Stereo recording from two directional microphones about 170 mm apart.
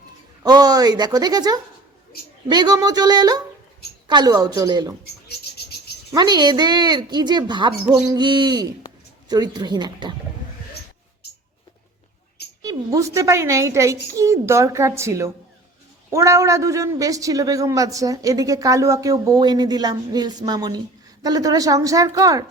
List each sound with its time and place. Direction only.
0.4 s speech: 25° right (ahead or behind)
6.1 s speech: 25° right (ahead or behind)
12.6 s a woman's voice: 20° right (ahead or behind)